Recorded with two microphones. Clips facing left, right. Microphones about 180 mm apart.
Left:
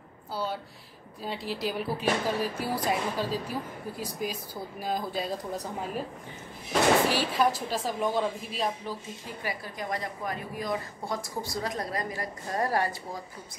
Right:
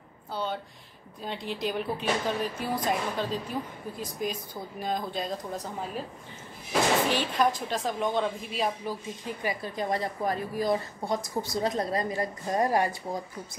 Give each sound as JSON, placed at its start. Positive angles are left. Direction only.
{"t": 0.3, "sound": "a sound", "side_deg": 5}
{"t": 1.2, "sound": "speech", "side_deg": 5}
{"t": 7.1, "sound": "speech", "side_deg": 5}
{"t": 8.8, "sound": "a woman's voice", "side_deg": -20}
{"t": 11.1, "sound": "a woman's voice", "side_deg": -20}